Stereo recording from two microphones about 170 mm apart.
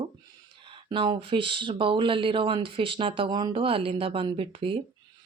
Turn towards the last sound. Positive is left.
turn(degrees=-30)  # may be behind; listen again after turning